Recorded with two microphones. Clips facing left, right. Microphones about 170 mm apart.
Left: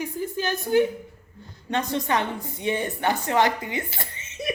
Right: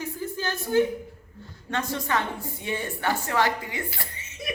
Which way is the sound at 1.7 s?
20° left (ahead or behind).